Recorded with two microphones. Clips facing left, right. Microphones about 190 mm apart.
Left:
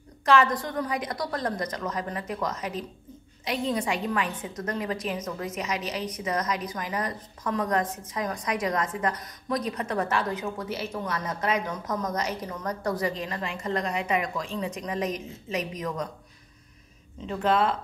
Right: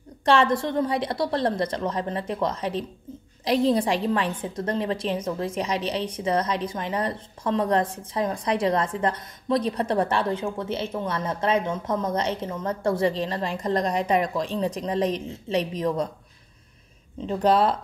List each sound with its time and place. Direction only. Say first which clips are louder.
0.2 s a woman's voice: right 2 dB; 30° right (ahead or behind)
17.3 s a woman's voice: right 4 dB; 35° right (ahead or behind)